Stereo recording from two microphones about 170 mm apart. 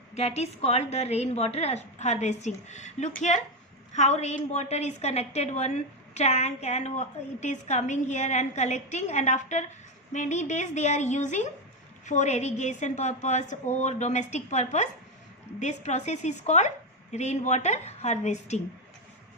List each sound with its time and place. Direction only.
0.1 s a woman's voice: 40° left (ahead or behind)